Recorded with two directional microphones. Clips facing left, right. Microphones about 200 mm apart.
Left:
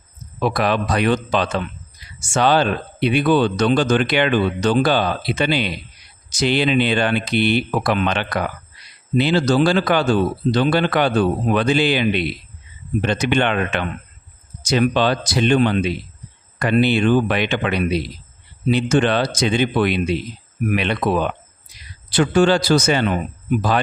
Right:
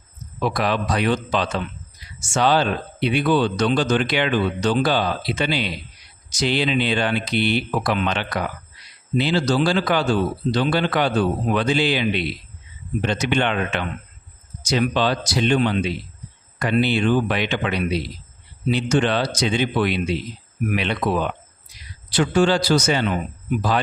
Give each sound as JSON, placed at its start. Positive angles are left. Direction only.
{"t": 0.4, "sound": "a man's voice", "side_deg": 60}